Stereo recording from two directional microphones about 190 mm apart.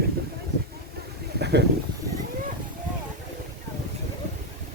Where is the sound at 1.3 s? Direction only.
60° right (ahead or behind).